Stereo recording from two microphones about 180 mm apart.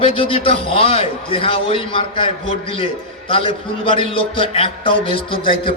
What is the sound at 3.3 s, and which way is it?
A man's voice, 30° left (ahead or behind).